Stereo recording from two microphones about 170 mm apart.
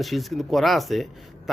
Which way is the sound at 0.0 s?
Centre (ahead or behind).